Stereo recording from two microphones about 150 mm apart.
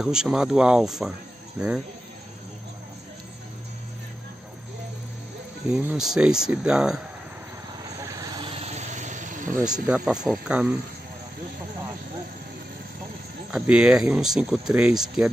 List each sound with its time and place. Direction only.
0.0 s speech: 5° right (ahead or behind)
5.7 s speech: 5° right (ahead or behind)
8.1 s vehicle: 35° right (ahead or behind); by 9.8 s 60° right (ahead or behind)
9.8 s speech: 5° right (ahead or behind)
13.5 s speech: 5° right (ahead or behind)